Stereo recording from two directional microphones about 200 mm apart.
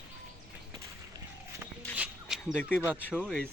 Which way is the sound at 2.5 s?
10° left (ahead or behind).